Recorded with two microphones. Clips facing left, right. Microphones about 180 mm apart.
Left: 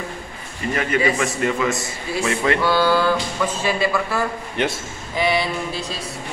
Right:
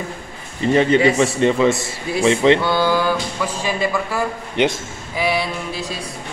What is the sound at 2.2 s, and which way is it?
Music, 25° right (ahead or behind).